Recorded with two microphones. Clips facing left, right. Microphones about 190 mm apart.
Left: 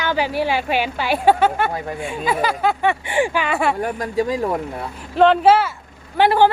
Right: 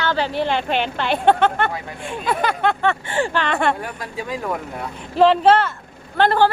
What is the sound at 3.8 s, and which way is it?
Speech, 40° left (ahead or behind).